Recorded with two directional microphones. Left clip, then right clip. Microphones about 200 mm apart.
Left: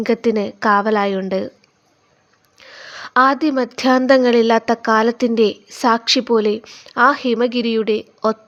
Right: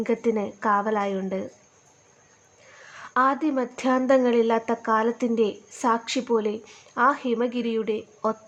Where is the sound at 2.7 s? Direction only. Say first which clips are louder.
Left 9 dB; 25° left (ahead or behind).